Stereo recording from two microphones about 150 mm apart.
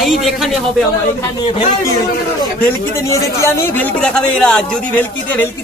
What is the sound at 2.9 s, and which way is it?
Speech, 20° left (ahead or behind).